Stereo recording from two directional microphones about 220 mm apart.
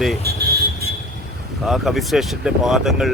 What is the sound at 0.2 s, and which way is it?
Vehicle, 45° right (ahead or behind).